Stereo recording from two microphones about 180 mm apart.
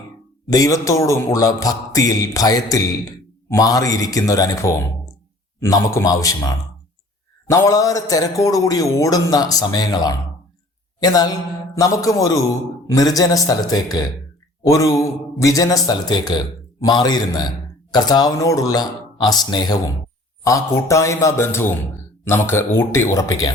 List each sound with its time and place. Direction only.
0.5 s a man's voice: 20° left (ahead or behind)